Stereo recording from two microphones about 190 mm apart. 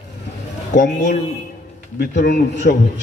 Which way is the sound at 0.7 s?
45° left (ahead or behind).